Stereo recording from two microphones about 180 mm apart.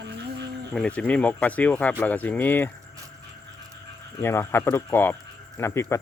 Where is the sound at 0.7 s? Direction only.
5° left (ahead or behind).